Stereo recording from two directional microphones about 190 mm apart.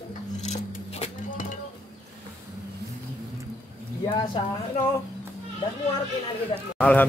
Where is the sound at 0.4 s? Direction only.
35° left (ahead or behind).